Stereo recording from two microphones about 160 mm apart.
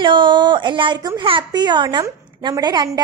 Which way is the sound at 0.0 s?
30° right (ahead or behind).